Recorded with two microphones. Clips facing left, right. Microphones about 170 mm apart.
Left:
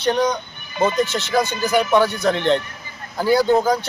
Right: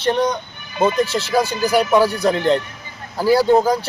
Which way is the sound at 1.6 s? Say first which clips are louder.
Right 2 dB; 10° right (ahead or behind).